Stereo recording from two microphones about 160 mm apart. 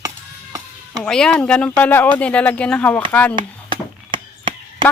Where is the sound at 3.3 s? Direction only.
30° right (ahead or behind).